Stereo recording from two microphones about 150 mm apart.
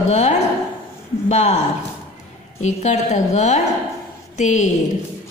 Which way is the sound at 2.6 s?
50° left (ahead or behind).